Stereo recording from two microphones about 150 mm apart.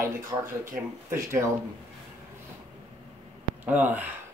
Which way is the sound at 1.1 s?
20° right (ahead or behind).